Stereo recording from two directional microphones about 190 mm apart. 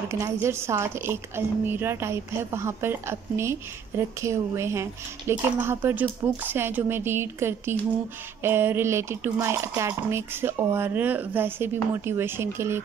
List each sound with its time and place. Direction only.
0.1 s a woman's voice: 15° right (ahead or behind)